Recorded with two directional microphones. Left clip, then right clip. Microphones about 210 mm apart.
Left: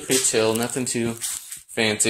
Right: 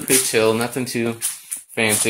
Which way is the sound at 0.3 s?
10° left (ahead or behind).